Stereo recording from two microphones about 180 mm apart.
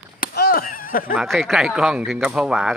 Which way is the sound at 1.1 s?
Centre (ahead or behind).